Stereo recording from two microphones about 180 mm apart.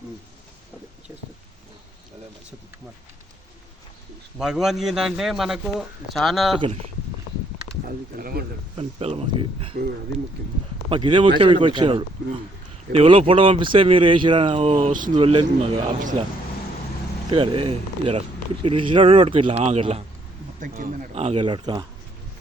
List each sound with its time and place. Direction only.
4.4 s a man's voice: 5° right (ahead or behind)
7.9 s speech: 55° right (ahead or behind)
8.7 s speech: 35° right (ahead or behind)
10.8 s speech: 30° right (ahead or behind)
15.1 s speech: 30° right (ahead or behind)
17.3 s speech: 30° right (ahead or behind)
20.6 s speech: 50° right (ahead or behind); by 21.8 s 25° right (ahead or behind)